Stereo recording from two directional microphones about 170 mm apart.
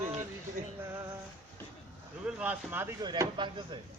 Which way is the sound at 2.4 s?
10° right (ahead or behind).